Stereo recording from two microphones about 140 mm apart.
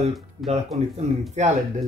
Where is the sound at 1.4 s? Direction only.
55° right (ahead or behind).